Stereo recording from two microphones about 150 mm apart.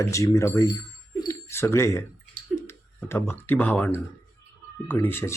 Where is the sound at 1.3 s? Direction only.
15° left (ahead or behind).